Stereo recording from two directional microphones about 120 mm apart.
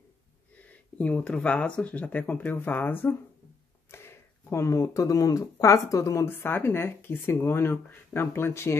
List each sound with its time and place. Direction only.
0.6 s speech: 10° left (ahead or behind)